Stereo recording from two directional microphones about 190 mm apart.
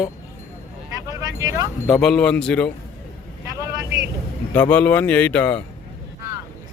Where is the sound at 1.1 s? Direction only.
20° right (ahead or behind).